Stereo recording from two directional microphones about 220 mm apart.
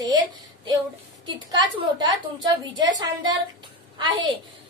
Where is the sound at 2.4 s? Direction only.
20° right (ahead or behind).